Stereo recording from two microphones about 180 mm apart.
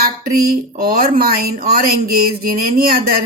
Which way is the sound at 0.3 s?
55° right (ahead or behind).